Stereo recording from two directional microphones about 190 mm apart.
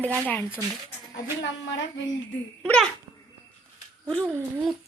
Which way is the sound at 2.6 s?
5° left (ahead or behind).